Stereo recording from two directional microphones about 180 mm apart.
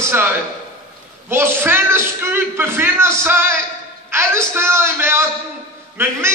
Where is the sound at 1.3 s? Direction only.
10° right (ahead or behind).